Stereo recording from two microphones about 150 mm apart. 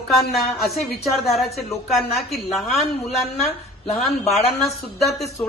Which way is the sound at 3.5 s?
45° left (ahead or behind).